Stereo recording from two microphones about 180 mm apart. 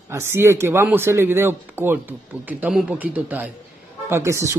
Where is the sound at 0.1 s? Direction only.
15° right (ahead or behind).